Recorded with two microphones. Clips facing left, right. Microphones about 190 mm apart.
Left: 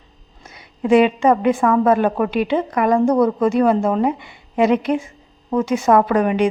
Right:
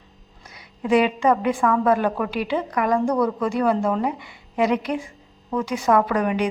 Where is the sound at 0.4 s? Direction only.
25° left (ahead or behind).